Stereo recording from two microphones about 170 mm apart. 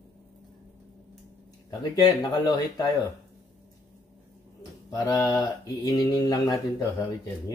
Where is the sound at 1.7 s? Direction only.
25° left (ahead or behind).